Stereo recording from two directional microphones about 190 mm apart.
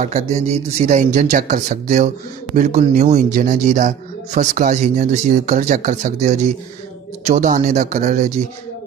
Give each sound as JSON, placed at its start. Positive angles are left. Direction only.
{"t": 0.0, "sound": "speech", "side_deg": -35}